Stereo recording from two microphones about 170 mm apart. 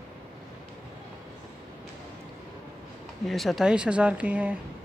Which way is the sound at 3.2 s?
Centre (ahead or behind).